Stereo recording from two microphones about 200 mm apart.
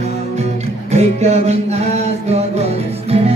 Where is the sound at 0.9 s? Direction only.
35° right (ahead or behind).